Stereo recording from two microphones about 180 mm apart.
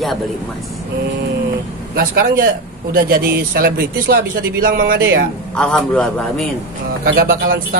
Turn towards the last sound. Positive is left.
turn(degrees=-55)  # may be behind; listen again after turning